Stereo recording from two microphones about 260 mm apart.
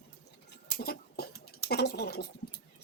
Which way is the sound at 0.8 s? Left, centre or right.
Left.